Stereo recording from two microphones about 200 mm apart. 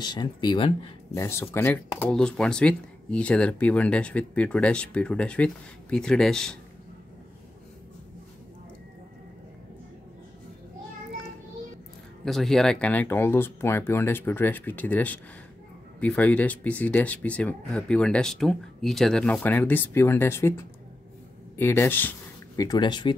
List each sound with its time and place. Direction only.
0.0 s speech: 20° left (ahead or behind)
1.1 s speech: 10° left (ahead or behind)
12.3 s speech: centre (ahead or behind)
21.5 s speech: 10° left (ahead or behind)